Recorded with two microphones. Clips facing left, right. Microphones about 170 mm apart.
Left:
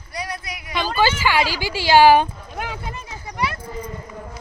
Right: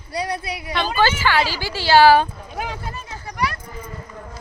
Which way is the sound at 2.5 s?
Centre (ahead or behind).